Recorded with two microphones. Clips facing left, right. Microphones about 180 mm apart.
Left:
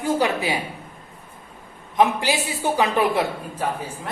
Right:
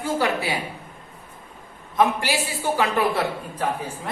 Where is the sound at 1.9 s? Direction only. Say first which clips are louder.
Left 1 dB; 15° left (ahead or behind).